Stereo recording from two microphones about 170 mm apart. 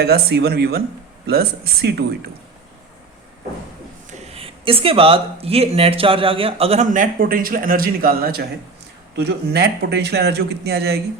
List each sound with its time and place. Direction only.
0.0 s speech: 70° right (ahead or behind)
4.1 s speech: 35° right (ahead or behind); by 8.4 s 65° right (ahead or behind)
9.1 s speech: 75° right (ahead or behind)